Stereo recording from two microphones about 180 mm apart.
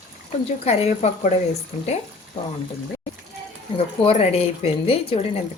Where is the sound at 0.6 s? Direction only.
35° left (ahead or behind).